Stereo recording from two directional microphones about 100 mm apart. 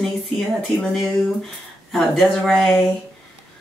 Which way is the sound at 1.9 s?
Centre (ahead or behind).